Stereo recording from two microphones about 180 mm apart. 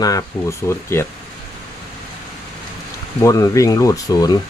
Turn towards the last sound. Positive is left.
turn(degrees=20)  # may be behind; listen again after turning